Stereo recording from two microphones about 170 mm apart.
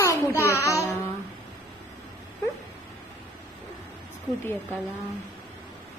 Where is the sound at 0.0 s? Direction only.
20° left (ahead or behind).